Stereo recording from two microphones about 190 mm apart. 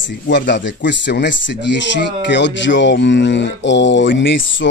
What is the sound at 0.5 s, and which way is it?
Speech, 70° left (ahead or behind).